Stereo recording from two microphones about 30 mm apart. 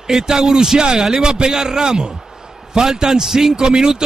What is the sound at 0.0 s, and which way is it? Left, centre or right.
A man's voice, centre.